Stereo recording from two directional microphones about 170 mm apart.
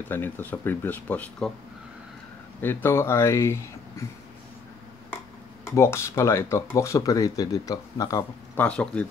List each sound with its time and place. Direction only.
0.1 s speech: 10° left (ahead or behind)
2.6 s speech: 15° left (ahead or behind)
5.8 s speech: 15° left (ahead or behind)